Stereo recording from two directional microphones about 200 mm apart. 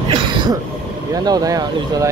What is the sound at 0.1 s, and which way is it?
Throat clearing, 25° right (ahead or behind).